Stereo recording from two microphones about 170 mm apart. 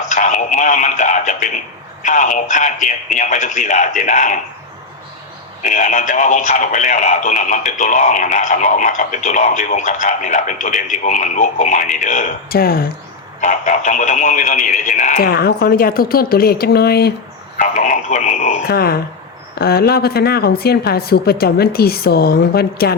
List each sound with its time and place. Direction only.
0.1 s speech: 45° left (ahead or behind)
5.6 s speech: 45° left (ahead or behind)
12.5 s a woman's voice: 60° left (ahead or behind)
13.4 s speech: 45° left (ahead or behind)
15.1 s a woman's voice: 65° left (ahead or behind)
17.6 s speech: 45° left (ahead or behind)
18.7 s a woman's voice: 65° left (ahead or behind)